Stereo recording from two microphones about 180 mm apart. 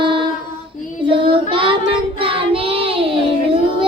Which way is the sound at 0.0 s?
25° right (ahead or behind).